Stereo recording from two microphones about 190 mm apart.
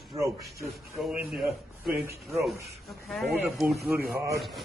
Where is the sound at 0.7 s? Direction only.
Centre (ahead or behind).